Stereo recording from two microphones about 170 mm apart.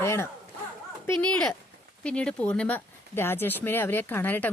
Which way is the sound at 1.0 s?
5° left (ahead or behind).